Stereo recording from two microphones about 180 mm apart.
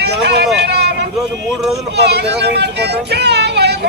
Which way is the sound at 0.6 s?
65° right (ahead or behind).